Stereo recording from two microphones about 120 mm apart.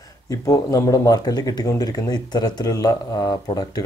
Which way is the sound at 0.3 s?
30° left (ahead or behind).